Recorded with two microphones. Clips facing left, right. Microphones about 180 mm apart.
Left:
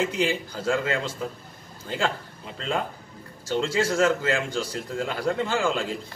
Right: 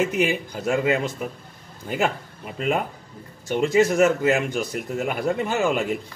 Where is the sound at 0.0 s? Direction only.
20° right (ahead or behind).